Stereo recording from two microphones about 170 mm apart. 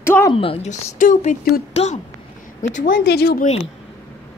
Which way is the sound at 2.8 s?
70° left (ahead or behind).